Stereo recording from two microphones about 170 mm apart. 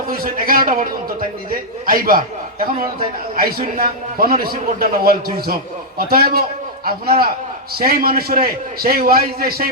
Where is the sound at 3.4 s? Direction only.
60° right (ahead or behind).